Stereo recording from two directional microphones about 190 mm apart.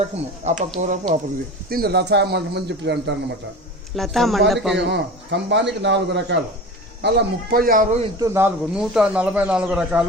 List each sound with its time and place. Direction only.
0.4 s speech: 35° right (ahead or behind)
1.7 s speech: 55° right (ahead or behind)
3.9 s speech: centre (ahead or behind)
4.9 s speech: 65° right (ahead or behind); by 8.0 s 40° right (ahead or behind)
8.2 s speech: 15° right (ahead or behind)
8.8 s speech: centre (ahead or behind)